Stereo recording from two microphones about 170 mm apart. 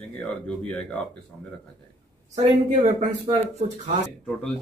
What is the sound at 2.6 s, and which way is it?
Speech, 35° right (ahead or behind).